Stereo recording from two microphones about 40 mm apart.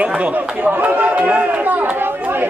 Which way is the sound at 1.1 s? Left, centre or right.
Right.